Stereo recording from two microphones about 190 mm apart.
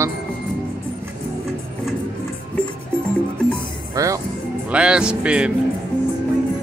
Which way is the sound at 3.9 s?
15° right (ahead or behind).